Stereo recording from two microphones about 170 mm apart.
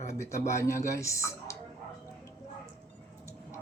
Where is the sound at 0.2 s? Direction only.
15° left (ahead or behind).